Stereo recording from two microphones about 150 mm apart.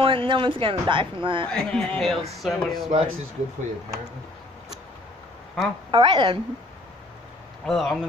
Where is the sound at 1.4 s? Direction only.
5° left (ahead or behind).